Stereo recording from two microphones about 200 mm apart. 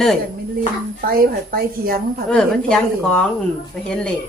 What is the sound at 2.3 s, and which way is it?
Speech, 5° left (ahead or behind).